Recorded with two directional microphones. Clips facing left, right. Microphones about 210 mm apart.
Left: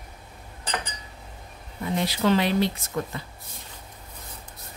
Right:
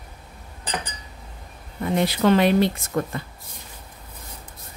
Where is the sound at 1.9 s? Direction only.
55° right (ahead or behind).